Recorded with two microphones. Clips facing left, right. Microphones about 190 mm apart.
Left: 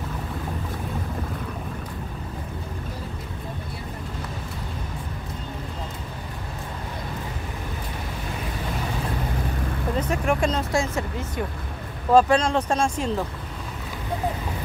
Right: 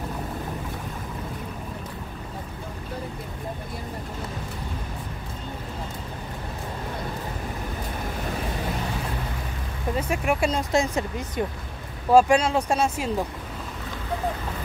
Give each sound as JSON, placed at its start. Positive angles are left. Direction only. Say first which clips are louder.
{"t": 9.9, "sound": "vehicle", "louder": "left 1 dB", "side_deg": -10}
{"t": 10.7, "sound": "speech", "louder": "right 1 dB", "side_deg": -20}